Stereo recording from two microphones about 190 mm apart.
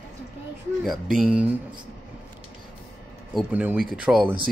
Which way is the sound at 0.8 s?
Centre (ahead or behind).